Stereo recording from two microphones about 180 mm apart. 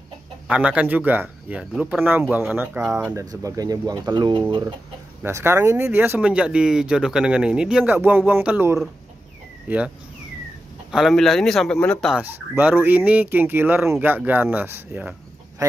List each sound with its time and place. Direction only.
0.5 s speech: 5° right (ahead or behind); by 4.7 s 25° right (ahead or behind)
5.2 s speech: 15° right (ahead or behind)
10.9 s speech: centre (ahead or behind)